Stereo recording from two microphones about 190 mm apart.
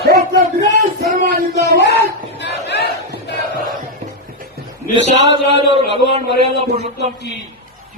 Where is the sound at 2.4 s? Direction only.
65° left (ahead or behind).